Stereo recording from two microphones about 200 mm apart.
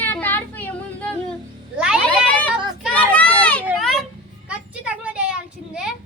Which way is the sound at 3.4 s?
5° left (ahead or behind).